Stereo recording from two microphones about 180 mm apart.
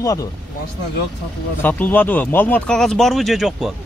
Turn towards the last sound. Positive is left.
turn(degrees=0)  # may be behind; listen again after turning